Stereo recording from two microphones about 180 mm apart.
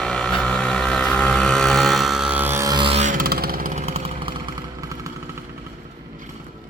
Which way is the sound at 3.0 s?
50° right (ahead or behind).